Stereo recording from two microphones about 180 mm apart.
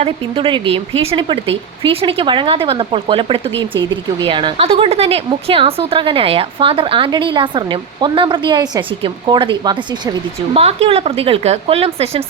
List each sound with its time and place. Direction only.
0.0 s a woman's voice: 30° right (ahead or behind)